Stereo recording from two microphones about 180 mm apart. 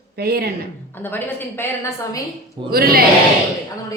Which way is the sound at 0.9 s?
10° left (ahead or behind).